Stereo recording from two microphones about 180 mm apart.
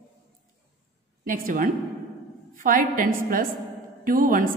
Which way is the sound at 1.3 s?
50° right (ahead or behind).